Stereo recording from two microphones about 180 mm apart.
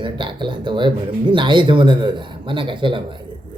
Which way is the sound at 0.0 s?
25° right (ahead or behind).